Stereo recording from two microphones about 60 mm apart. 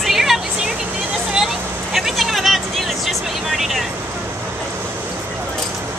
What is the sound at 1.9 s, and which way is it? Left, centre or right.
Vehicle, centre.